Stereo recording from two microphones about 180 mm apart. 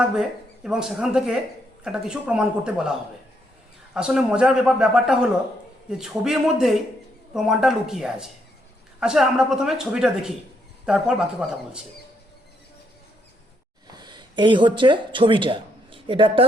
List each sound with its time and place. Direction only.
0.0 s a woman's voice: 5° right (ahead or behind)
3.9 s a woman's voice: 5° right (ahead or behind)
13.9 s speech: 25° right (ahead or behind)